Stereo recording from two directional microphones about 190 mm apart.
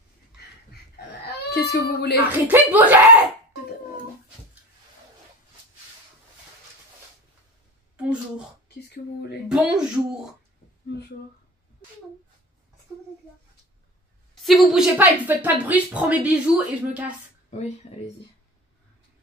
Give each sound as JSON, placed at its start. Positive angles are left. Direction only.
{"t": 1.5, "sound": "a child's voice", "side_deg": 55}
{"t": 2.1, "sound": "a woman's voice", "side_deg": -10}
{"t": 8.6, "sound": "a sound", "side_deg": 60}
{"t": 9.5, "sound": "speech", "side_deg": -5}
{"t": 14.3, "sound": "a woman's voice", "side_deg": 0}
{"t": 17.5, "sound": "speech", "side_deg": 35}